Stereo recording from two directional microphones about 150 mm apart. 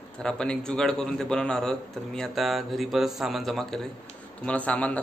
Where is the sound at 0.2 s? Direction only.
5° left (ahead or behind).